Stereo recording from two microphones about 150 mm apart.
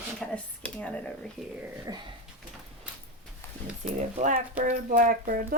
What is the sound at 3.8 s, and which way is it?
Speech, 50° right (ahead or behind).